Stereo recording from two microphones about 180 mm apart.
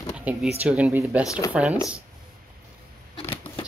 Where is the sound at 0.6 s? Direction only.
5° right (ahead or behind).